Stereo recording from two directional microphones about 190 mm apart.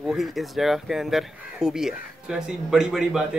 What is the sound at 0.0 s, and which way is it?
Speech, centre (ahead or behind).